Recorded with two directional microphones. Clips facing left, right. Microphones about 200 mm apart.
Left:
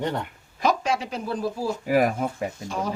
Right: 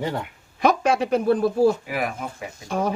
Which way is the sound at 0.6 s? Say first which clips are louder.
Right 4 dB; 60° right (ahead or behind).